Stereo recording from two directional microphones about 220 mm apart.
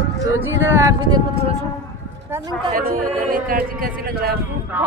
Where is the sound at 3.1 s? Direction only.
40° right (ahead or behind).